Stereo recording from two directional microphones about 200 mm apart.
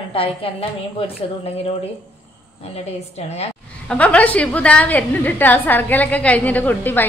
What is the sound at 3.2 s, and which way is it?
Speech, 30° left (ahead or behind).